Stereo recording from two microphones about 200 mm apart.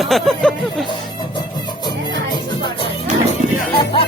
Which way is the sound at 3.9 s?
25° left (ahead or behind).